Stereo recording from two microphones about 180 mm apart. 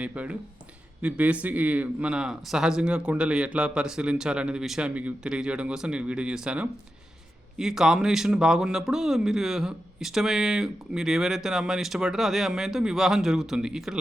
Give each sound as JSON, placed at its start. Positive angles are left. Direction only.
{"t": 0.0, "sound": "speech", "side_deg": -5}